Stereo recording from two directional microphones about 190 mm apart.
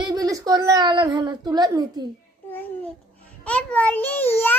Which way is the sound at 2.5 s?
10° left (ahead or behind).